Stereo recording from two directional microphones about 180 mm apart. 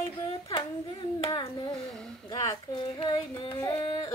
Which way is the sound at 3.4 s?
20° left (ahead or behind).